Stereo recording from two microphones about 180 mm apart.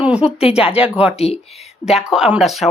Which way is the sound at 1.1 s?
35° left (ahead or behind).